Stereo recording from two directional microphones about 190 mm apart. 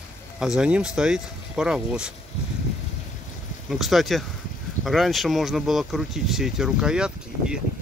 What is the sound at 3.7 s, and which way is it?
Speech, centre (ahead or behind).